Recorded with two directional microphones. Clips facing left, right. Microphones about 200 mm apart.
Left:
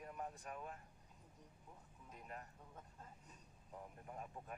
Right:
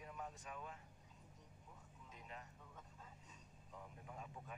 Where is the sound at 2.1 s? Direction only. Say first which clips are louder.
Left 3 dB; 55° left (ahead or behind).